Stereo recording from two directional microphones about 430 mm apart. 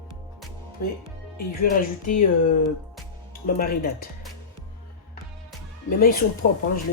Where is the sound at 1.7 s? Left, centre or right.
Centre.